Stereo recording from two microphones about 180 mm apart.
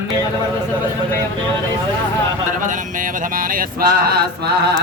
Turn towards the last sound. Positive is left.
turn(degrees=-60)  # may be behind; listen again after turning